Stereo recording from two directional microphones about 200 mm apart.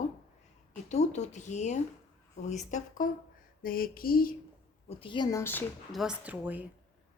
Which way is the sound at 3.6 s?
45° left (ahead or behind).